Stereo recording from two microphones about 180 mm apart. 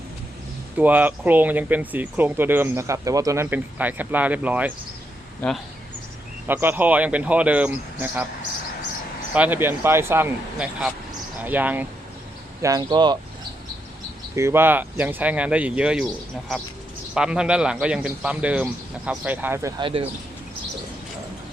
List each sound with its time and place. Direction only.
0.8 s speech: 10° right (ahead or behind)
6.5 s speech: 10° right (ahead or behind)
9.3 s speech: 10° right (ahead or behind)
12.6 s speech: 20° right (ahead or behind)
14.3 s speech: 15° right (ahead or behind)
17.2 s a man's voice: 5° right (ahead or behind)
19.8 s speech: 30° right (ahead or behind)